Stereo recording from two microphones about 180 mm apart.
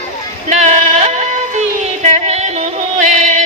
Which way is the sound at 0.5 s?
40° right (ahead or behind).